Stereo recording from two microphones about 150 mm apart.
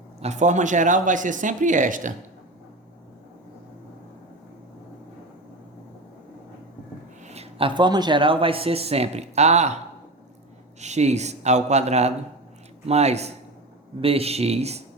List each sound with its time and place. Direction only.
0.2 s speech: 50° right (ahead or behind)
7.3 s speech: 45° right (ahead or behind)
10.8 s speech: 50° right (ahead or behind)